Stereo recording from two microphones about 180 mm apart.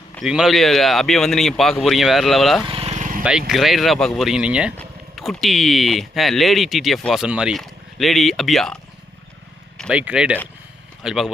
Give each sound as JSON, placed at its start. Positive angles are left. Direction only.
{"t": 0.2, "sound": "speech", "side_deg": 0}
{"t": 2.6, "sound": "vehicle", "side_deg": -30}
{"t": 3.2, "sound": "speech", "side_deg": -5}
{"t": 9.7, "sound": "a sound", "side_deg": 5}
{"t": 10.0, "sound": "speech", "side_deg": -5}